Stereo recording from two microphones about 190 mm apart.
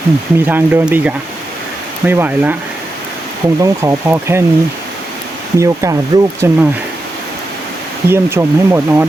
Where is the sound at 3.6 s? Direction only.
15° right (ahead or behind).